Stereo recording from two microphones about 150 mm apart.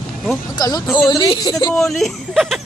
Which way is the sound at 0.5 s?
25° left (ahead or behind).